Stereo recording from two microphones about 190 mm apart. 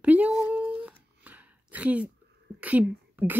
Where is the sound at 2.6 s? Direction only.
10° right (ahead or behind).